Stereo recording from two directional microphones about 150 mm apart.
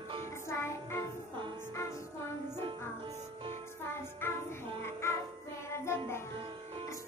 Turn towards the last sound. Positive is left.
turn(degrees=-35)  # may be behind; listen again after turning